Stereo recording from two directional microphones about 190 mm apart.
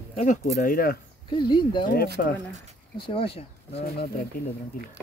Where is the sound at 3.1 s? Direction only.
30° left (ahead or behind).